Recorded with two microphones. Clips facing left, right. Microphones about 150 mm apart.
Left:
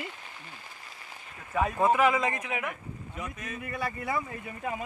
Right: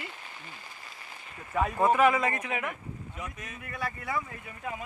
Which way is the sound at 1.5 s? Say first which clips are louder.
Even; 5° right (ahead or behind).